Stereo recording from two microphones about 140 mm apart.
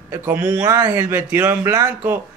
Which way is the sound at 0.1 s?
15° right (ahead or behind).